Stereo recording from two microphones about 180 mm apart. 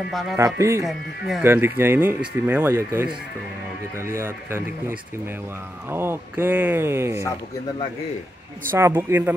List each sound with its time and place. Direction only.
0.1 s speech: centre (ahead or behind)
0.6 s speech: 15° right (ahead or behind)
0.8 s speech: centre (ahead or behind)
1.4 s speech: 15° right (ahead or behind)
8.7 s speech: 15° right (ahead or behind)